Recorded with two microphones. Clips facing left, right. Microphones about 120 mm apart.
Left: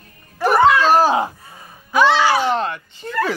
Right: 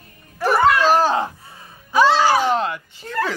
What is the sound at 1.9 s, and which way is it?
Speech, 35° right (ahead or behind).